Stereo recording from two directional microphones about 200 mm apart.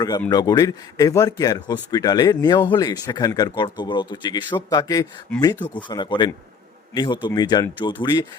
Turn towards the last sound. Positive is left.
turn(degrees=20)  # may be behind; listen again after turning